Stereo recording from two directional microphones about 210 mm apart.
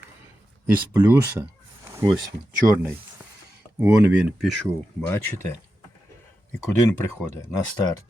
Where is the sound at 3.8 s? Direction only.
10° right (ahead or behind).